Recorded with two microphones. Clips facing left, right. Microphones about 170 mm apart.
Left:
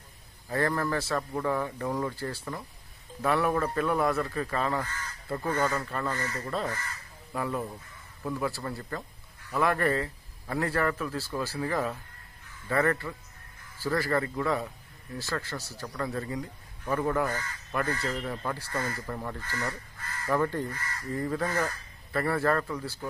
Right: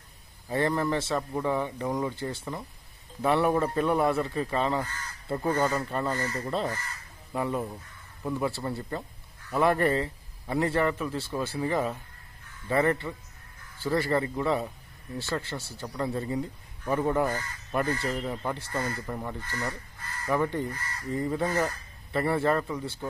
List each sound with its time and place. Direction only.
0.5 s speech: 25° right (ahead or behind)
19.0 s speech: 10° right (ahead or behind)